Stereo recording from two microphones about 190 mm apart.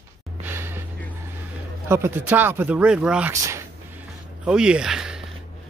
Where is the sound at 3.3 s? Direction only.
15° right (ahead or behind).